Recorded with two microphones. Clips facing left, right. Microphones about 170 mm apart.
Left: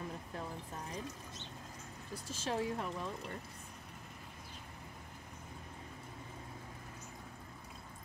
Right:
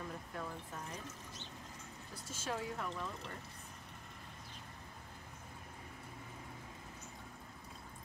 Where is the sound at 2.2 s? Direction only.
30° left (ahead or behind).